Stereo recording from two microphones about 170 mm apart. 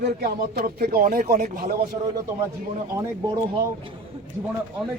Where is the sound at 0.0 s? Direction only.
60° right (ahead or behind).